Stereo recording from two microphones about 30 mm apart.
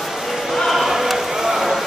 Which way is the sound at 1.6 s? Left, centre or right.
Centre.